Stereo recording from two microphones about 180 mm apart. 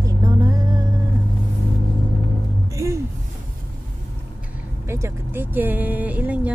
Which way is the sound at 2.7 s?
15° right (ahead or behind).